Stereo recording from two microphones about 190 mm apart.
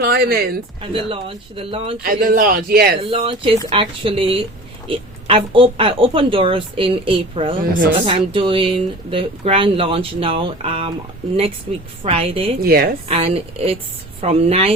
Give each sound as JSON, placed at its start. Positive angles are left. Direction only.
{"t": 0.0, "sound": "speech", "side_deg": -55}
{"t": 0.8, "sound": "speech", "side_deg": -30}
{"t": 2.0, "sound": "a man's voice", "side_deg": -50}
{"t": 3.0, "sound": "speech", "side_deg": -30}
{"t": 12.0, "sound": "speech", "side_deg": -30}
{"t": 12.5, "sound": "a man's voice", "side_deg": -50}
{"t": 13.1, "sound": "a woman's voice", "side_deg": -30}